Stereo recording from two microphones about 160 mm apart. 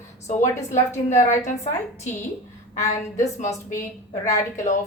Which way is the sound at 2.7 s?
50° left (ahead or behind).